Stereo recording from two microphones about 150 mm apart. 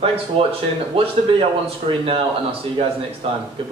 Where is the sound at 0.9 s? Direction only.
40° right (ahead or behind).